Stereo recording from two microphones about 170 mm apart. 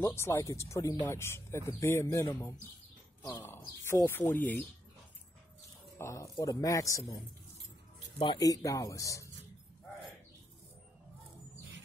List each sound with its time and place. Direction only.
0.0 s speech: 15° left (ahead or behind)
5.9 s speech: 15° left (ahead or behind)